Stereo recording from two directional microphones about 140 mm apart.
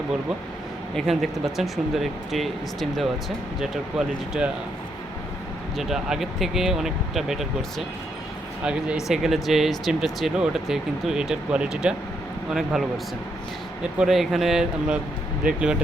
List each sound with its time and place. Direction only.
0.9 s speech: centre (ahead or behind)
5.7 s speech: centre (ahead or behind)
8.6 s speech: 5° right (ahead or behind)
14.0 s speech: centre (ahead or behind)